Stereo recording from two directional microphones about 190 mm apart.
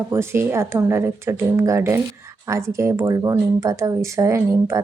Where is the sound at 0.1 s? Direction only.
15° right (ahead or behind).